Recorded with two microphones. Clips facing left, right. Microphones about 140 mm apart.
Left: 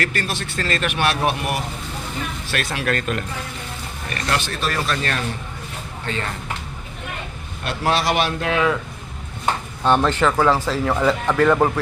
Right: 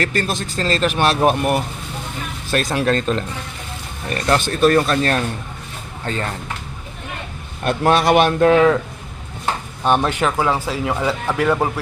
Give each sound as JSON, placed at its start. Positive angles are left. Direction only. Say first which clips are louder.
{"t": 0.0, "sound": "speech", "louder": "right 4 dB", "side_deg": -35}
{"t": 2.9, "sound": "a man's voice", "louder": "right 4 dB", "side_deg": -30}
{"t": 7.6, "sound": "a man's voice", "louder": "right 5 dB", "side_deg": -50}
{"t": 9.8, "sound": "speech", "louder": "even", "side_deg": -15}